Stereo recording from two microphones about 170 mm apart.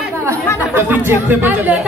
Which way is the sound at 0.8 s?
10° right (ahead or behind).